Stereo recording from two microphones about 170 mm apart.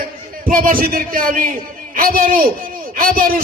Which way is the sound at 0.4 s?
55° right (ahead or behind).